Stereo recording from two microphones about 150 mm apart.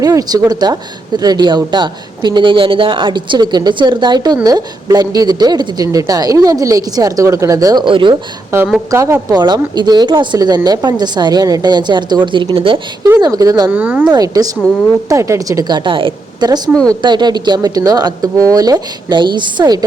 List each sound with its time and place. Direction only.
0.0 s speech: 25° right (ahead or behind)
8.9 s speech: 20° right (ahead or behind)
13.7 s speech: 10° right (ahead or behind)
14.1 s speech: 25° right (ahead or behind)